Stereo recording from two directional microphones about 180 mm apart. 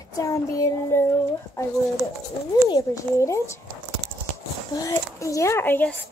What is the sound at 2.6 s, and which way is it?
Speech, 20° left (ahead or behind).